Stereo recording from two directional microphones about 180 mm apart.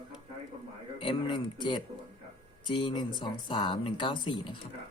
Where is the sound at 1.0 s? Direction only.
30° left (ahead or behind).